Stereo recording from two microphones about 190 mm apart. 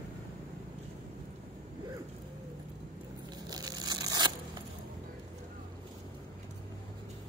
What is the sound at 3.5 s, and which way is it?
Crushing, 20° right (ahead or behind).